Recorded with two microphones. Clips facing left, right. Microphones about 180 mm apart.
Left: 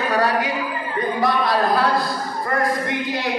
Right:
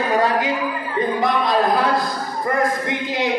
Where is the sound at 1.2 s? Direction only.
20° right (ahead or behind).